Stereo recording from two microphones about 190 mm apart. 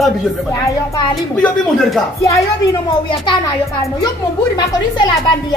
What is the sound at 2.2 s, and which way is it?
Speech, 15° left (ahead or behind).